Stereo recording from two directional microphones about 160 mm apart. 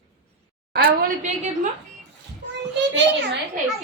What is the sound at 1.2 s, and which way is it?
Speech, 45° right (ahead or behind).